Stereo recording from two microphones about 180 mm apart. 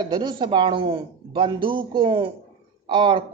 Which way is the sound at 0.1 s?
25° right (ahead or behind).